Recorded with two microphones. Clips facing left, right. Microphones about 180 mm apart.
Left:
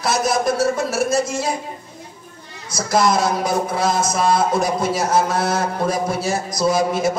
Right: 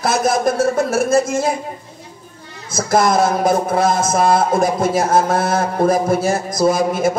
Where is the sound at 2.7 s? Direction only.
50° right (ahead or behind).